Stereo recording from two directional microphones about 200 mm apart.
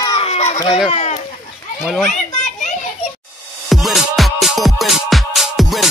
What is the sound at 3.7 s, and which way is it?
Music, centre (ahead or behind).